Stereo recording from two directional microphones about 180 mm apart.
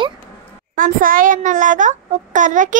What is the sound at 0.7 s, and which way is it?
A child's voice, 50° right (ahead or behind).